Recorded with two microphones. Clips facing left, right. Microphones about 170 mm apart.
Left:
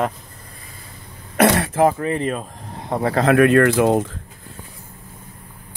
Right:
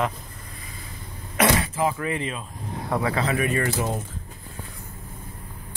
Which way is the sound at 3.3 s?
80° left.